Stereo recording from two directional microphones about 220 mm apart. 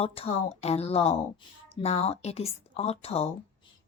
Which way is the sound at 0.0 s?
25° left (ahead or behind).